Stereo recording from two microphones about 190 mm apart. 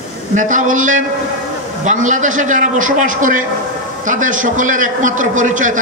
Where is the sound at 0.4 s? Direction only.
40° right (ahead or behind).